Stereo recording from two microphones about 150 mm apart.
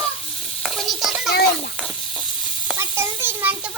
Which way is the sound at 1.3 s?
90° left.